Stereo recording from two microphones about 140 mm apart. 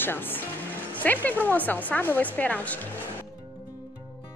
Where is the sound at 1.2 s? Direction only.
10° left (ahead or behind).